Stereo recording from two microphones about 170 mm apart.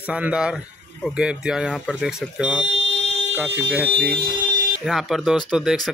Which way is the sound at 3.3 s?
10° right (ahead or behind).